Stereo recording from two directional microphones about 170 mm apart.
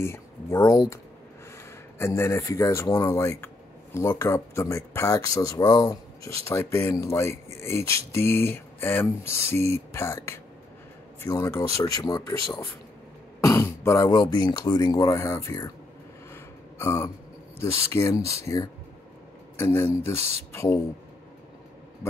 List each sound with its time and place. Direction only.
0.0 s speech: 15° left (ahead or behind)
2.0 s speech: 15° left (ahead or behind)
13.4 s speech: 15° left (ahead or behind)
16.7 s speech: 15° left (ahead or behind)